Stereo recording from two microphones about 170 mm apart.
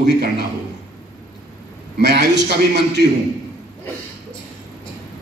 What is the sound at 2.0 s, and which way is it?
Speech, 90° right.